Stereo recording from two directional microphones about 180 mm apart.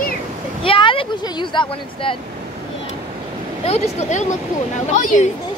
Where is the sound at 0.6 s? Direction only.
30° left (ahead or behind).